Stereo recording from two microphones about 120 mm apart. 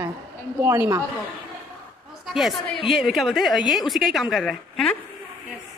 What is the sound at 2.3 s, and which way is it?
A woman's voice, centre (ahead or behind).